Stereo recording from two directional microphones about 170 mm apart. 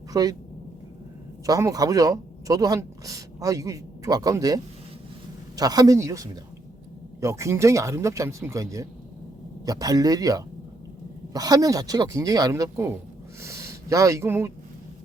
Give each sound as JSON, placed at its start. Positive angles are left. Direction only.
{"t": 0.1, "sound": "speech", "side_deg": -20}
{"t": 1.5, "sound": "speech", "side_deg": -20}